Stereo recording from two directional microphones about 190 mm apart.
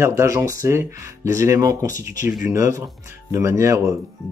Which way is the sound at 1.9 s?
45° left (ahead or behind).